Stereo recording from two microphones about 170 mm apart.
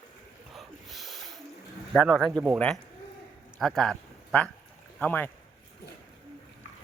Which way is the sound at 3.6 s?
5° left (ahead or behind).